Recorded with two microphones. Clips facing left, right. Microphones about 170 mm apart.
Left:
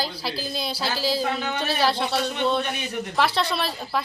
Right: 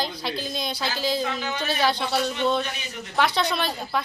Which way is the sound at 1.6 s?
Centre (ahead or behind).